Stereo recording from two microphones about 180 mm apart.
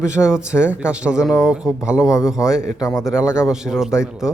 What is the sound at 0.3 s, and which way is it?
A man's voice, 5° right (ahead or behind).